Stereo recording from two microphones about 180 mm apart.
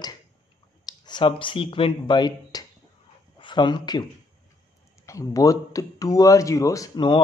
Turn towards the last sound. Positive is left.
turn(degrees=20)  # may be behind; listen again after turning